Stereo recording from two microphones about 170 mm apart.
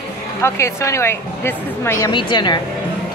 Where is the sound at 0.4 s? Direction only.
15° left (ahead or behind).